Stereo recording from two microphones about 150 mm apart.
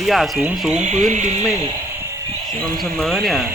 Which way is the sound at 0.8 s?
50° right (ahead or behind).